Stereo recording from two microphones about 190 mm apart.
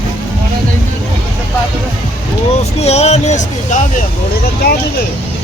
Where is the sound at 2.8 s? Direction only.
35° left (ahead or behind).